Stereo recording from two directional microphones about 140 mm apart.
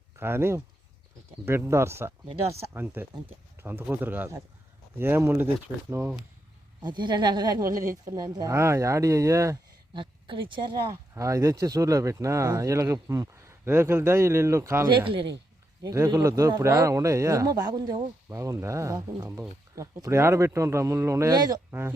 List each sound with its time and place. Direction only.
0.2 s speech: 15° right (ahead or behind)
6.8 s speech: 35° right (ahead or behind)
9.9 s speech: 35° right (ahead or behind)
11.1 s speech: 20° right (ahead or behind)
14.8 s speech: 35° right (ahead or behind)
15.8 s speech: 25° right (ahead or behind)
21.7 s speech: 15° right (ahead or behind)